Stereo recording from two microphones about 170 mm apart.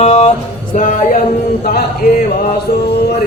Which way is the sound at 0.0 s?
45° left (ahead or behind).